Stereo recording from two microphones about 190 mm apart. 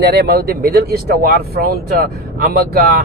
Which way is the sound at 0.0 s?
60° right (ahead or behind).